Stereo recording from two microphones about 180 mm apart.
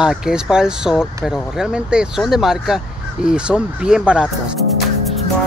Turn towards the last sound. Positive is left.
turn(degrees=-5)  # may be behind; listen again after turning